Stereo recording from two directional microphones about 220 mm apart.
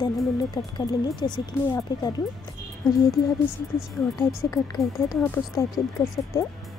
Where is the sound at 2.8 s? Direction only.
Centre (ahead or behind).